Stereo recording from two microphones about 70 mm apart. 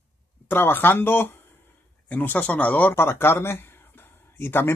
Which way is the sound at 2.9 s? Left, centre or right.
Left.